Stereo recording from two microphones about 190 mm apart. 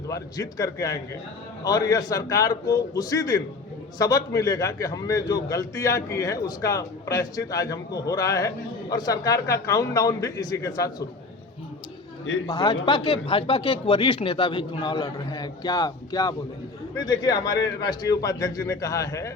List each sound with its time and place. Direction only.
0.1 s a man's voice: 20° left (ahead or behind)
12.5 s speech: 20° left (ahead or behind)